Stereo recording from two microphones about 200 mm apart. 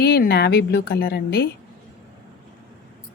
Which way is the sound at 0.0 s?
50° left (ahead or behind).